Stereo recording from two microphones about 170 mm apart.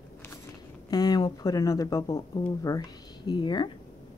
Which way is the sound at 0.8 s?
25° left (ahead or behind).